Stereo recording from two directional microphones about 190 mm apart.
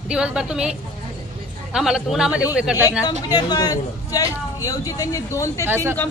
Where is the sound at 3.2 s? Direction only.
20° left (ahead or behind).